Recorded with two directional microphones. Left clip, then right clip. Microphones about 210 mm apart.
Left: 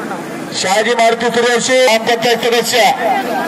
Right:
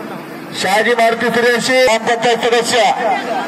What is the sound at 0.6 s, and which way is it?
Speech, 35° right (ahead or behind).